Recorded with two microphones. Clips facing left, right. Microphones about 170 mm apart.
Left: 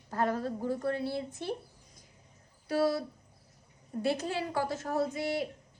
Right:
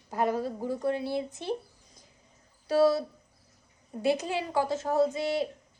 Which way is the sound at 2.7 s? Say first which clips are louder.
Right 5 dB; 25° right (ahead or behind).